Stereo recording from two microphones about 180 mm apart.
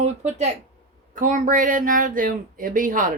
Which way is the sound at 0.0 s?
40° right (ahead or behind).